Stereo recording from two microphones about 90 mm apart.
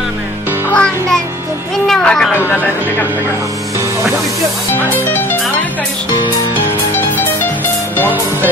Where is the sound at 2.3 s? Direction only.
20° left (ahead or behind).